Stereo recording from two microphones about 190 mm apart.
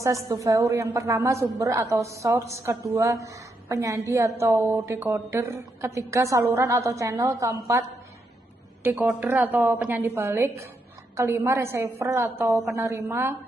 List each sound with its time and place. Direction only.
0.0 s a woman's voice: 15° right (ahead or behind)